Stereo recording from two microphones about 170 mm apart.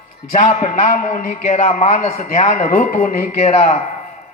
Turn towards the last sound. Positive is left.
turn(degrees=40)  # may be behind; listen again after turning